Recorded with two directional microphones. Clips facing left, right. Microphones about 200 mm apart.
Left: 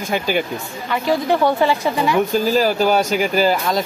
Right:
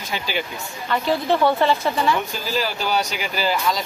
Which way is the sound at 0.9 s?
10° left (ahead or behind).